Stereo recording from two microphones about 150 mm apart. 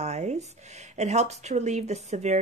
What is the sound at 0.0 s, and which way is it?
Speech, 50° right (ahead or behind).